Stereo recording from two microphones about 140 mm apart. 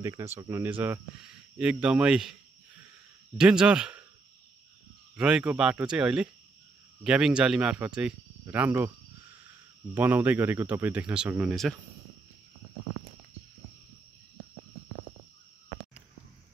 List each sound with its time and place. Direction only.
0.0 s speech: 20° right (ahead or behind); by 2.3 s 5° right (ahead or behind)
3.3 s speech: 5° right (ahead or behind)
5.1 s speech: 5° right (ahead or behind)
9.9 s speech: 10° right (ahead or behind)